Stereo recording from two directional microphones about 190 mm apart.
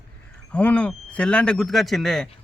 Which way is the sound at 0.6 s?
5° left (ahead or behind).